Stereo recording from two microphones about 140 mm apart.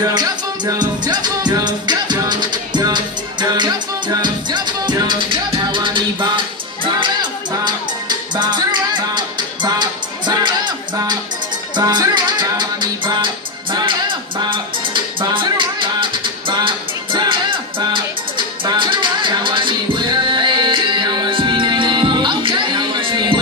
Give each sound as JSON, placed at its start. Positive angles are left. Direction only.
{"t": 0.0, "sound": "music", "side_deg": -25}